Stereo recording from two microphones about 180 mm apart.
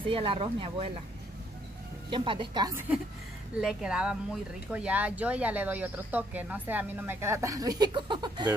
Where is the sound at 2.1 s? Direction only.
30° right (ahead or behind).